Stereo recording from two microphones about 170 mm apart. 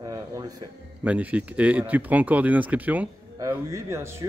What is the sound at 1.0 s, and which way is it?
Speech, 10° right (ahead or behind).